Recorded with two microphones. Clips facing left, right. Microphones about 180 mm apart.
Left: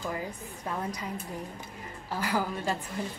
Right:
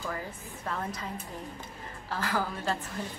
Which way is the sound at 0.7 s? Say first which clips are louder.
Left 1 dB; 15° left (ahead or behind).